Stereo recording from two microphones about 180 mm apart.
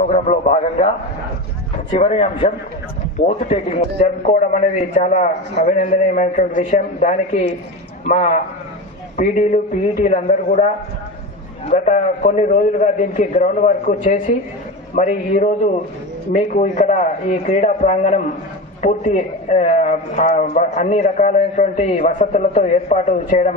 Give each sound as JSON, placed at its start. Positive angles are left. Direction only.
{"t": 0.1, "sound": "a man's voice", "side_deg": 45}
{"t": 2.0, "sound": "a man's voice", "side_deg": 40}